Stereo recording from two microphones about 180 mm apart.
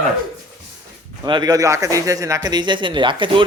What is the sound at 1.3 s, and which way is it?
Speech, 25° right (ahead or behind).